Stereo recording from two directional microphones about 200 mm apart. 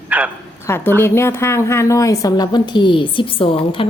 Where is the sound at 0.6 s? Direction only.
10° left (ahead or behind).